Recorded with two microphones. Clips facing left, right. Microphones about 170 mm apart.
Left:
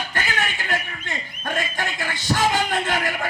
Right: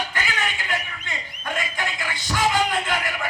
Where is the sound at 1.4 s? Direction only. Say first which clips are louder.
Left 2 dB; 45° left (ahead or behind).